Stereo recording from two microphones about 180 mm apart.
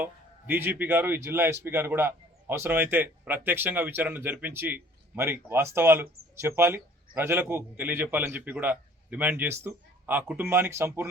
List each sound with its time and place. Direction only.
0.0 s speech: 10° right (ahead or behind)